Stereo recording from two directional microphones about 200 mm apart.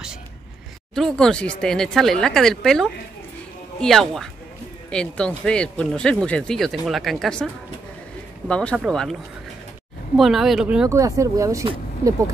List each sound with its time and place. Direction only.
0.9 s speech: centre (ahead or behind)
10.1 s speech: centre (ahead or behind)
11.0 s speech: 15° right (ahead or behind)